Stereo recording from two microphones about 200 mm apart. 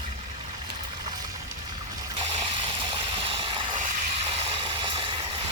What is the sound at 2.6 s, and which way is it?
Ratchet, 25° right (ahead or behind).